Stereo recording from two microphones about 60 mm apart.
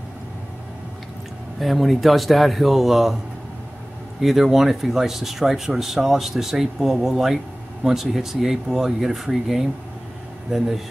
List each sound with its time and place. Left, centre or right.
1.6 s speech: centre
4.2 s speech: centre